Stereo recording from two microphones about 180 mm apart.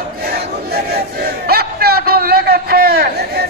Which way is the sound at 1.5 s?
60° right (ahead or behind).